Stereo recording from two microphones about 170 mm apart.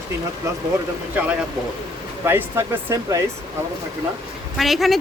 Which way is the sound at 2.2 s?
15° right (ahead or behind).